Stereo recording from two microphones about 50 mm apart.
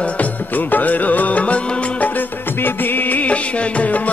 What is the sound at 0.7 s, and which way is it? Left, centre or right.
Music, left.